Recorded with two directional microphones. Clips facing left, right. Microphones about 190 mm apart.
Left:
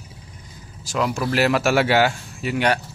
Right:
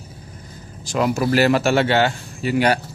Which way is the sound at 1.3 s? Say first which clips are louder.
Right 2 dB; centre (ahead or behind).